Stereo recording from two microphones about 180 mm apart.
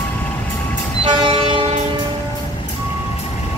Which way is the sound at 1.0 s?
30° right (ahead or behind).